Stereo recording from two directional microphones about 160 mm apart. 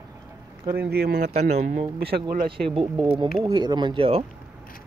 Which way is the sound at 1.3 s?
45° right (ahead or behind).